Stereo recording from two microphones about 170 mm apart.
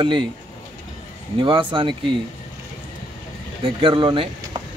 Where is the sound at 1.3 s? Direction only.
30° right (ahead or behind).